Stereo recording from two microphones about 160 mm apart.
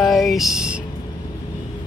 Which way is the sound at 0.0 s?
Centre (ahead or behind).